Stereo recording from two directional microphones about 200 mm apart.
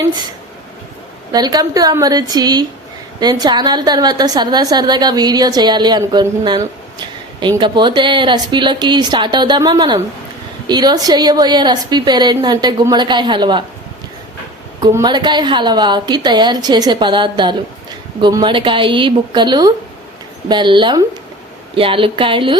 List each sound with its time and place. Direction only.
1.3 s a woman's voice: 20° right (ahead or behind)
14.8 s a woman's voice: 20° right (ahead or behind)